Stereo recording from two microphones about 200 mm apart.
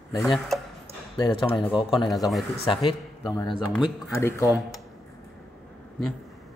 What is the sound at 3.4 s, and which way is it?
Speech, centre (ahead or behind).